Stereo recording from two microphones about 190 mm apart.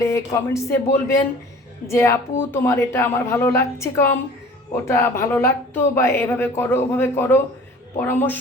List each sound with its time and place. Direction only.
0.0 s a woman's voice: 15° left (ahead or behind)